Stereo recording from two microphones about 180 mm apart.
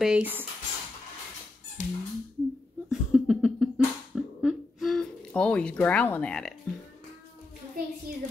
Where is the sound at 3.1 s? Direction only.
Centre (ahead or behind).